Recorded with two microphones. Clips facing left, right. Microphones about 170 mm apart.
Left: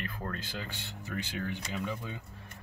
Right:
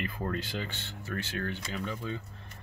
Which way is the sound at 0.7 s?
15° left (ahead or behind).